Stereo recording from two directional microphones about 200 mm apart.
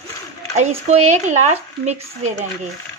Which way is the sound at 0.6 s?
35° right (ahead or behind).